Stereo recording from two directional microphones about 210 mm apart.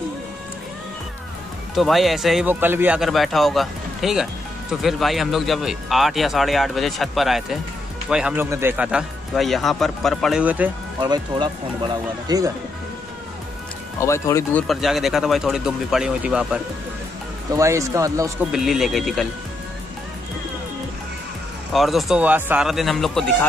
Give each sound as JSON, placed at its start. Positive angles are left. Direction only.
{"t": 1.8, "sound": "speech", "side_deg": 0}
{"t": 11.0, "sound": "speech", "side_deg": -20}
{"t": 13.9, "sound": "speech", "side_deg": 15}
{"t": 17.6, "sound": "speech", "side_deg": -15}
{"t": 18.5, "sound": "speech", "side_deg": 0}
{"t": 21.7, "sound": "speech", "side_deg": 0}